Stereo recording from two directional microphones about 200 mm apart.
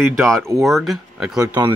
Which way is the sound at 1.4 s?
15° right (ahead or behind).